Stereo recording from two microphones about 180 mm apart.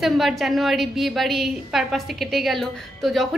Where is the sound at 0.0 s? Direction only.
Centre (ahead or behind).